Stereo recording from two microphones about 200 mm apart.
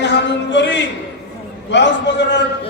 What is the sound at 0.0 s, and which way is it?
A man's voice, 60° left (ahead or behind).